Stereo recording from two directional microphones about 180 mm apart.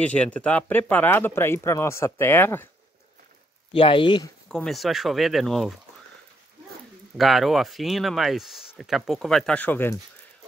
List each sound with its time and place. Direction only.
0.0 s speech: 5° left (ahead or behind)
3.7 s speech: 30° left (ahead or behind)
4.5 s speech: centre (ahead or behind)
7.2 s speech: centre (ahead or behind)